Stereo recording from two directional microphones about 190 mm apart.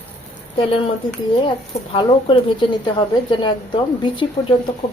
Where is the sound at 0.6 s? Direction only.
25° left (ahead or behind).